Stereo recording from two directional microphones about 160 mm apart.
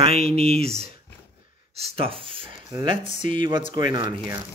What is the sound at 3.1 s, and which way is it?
Speech, 45° left (ahead or behind).